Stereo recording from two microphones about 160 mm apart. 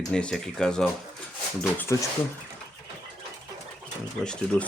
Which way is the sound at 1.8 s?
15° left (ahead or behind).